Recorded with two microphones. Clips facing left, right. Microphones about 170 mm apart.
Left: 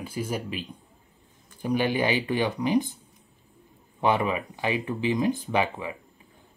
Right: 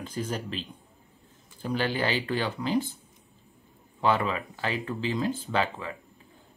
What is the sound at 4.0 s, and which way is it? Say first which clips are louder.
Speech: left 2 dB; 15° left (ahead or behind).